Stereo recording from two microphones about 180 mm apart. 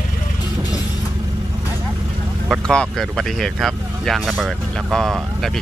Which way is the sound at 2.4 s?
Centre (ahead or behind).